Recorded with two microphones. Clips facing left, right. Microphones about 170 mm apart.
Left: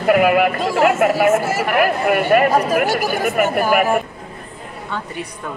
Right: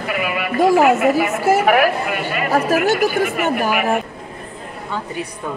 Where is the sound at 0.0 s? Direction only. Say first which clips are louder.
Left 9 dB; 55° left (ahead or behind).